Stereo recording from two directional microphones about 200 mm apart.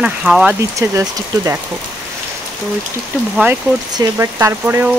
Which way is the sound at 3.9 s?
15° right (ahead or behind).